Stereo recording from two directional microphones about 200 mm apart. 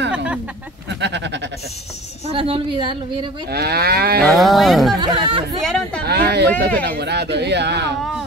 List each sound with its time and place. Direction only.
0.8 s a sound: 60° right (ahead or behind)
2.3 s a woman's voice: 25° right (ahead or behind)
3.4 s moo: 55° right (ahead or behind)
4.2 s speech: centre (ahead or behind)
5.0 s speech: 25° right (ahead or behind)
5.6 s a sound: centre (ahead or behind)
6.0 s speech: 55° right (ahead or behind)